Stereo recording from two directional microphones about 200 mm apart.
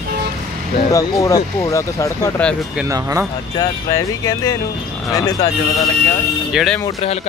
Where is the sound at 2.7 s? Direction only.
15° right (ahead or behind).